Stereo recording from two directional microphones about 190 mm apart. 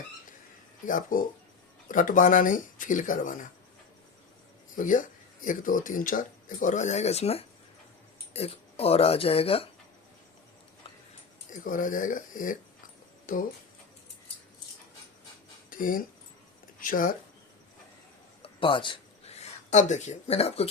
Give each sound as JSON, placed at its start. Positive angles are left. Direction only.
{"t": 0.9, "sound": "speech", "side_deg": 45}
{"t": 4.8, "sound": "speech", "side_deg": 45}
{"t": 11.5, "sound": "speech", "side_deg": 45}
{"t": 15.7, "sound": "speech", "side_deg": 45}
{"t": 18.4, "sound": "a sound", "side_deg": 25}